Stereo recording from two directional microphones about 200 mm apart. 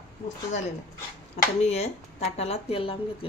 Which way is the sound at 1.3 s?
30° left (ahead or behind).